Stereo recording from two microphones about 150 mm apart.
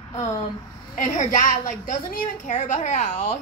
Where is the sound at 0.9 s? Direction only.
55° left (ahead or behind).